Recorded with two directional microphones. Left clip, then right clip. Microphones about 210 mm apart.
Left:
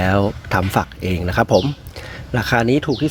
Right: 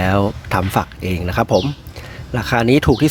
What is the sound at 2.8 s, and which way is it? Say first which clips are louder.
Speech: right 5 dB; 15° right (ahead or behind).